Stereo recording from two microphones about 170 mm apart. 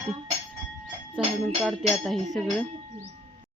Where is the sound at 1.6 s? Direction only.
Centre (ahead or behind).